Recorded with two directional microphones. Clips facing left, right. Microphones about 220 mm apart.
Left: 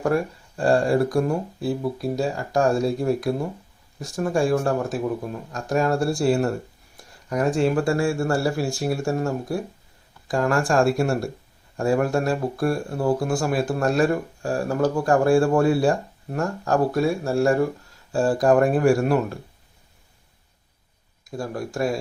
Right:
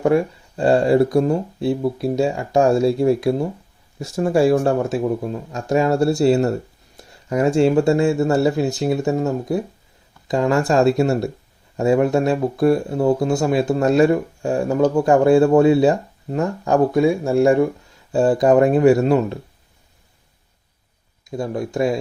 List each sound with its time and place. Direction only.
0.0 s speech: 25° right (ahead or behind)
21.2 s speech: 20° right (ahead or behind)